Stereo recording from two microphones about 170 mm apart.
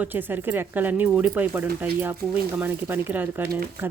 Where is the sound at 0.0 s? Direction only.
10° right (ahead or behind).